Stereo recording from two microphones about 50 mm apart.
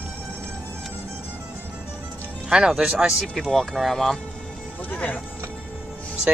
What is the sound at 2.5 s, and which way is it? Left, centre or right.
Speech, centre.